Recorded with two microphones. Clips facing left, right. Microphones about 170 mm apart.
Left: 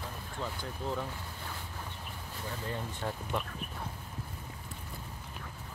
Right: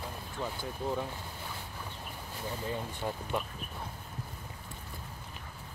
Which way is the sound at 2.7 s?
10° right (ahead or behind).